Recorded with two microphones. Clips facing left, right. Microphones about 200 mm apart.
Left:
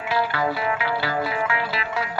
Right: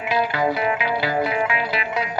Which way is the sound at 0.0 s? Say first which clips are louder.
Right 2 dB; 15° right (ahead or behind).